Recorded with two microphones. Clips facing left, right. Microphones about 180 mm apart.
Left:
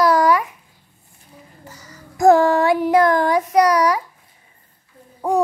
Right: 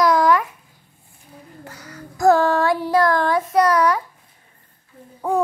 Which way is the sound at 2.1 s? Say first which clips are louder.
Left 3 dB; 15° left (ahead or behind).